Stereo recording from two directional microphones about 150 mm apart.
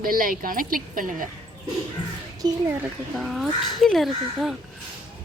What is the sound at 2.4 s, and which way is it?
Speech, 25° right (ahead or behind).